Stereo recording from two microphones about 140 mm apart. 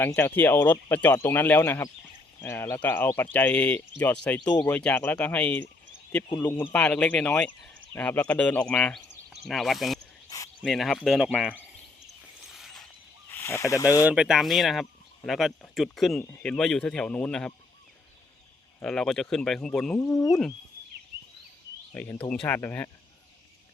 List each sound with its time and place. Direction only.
0.0 s speech: 15° left (ahead or behind)
9.0 s a sound: centre (ahead or behind)
10.2 s cricket: 25° left (ahead or behind)
10.6 s speech: centre (ahead or behind)
12.5 s a sound: centre (ahead or behind)
13.3 s speech: 20° left (ahead or behind)
14.1 s speech: 5° right (ahead or behind)
16.2 s speech: 10° left (ahead or behind)
18.8 s speech: 5° left (ahead or behind)
20.0 s speech: 25° left (ahead or behind)
21.9 s speech: 15° left (ahead or behind)